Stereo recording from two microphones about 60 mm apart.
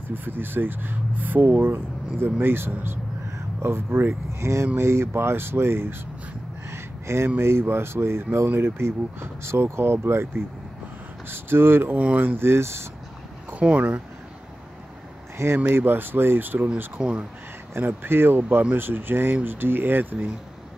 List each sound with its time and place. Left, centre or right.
0.1 s speech: right
6.7 s a sound: right
7.2 s speech: right
13.5 s speech: right
15.3 s speech: right
15.6 s speech: right
17.0 s speech: centre
17.7 s speech: right